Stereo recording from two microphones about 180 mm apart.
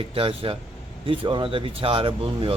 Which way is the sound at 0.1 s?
30° right (ahead or behind).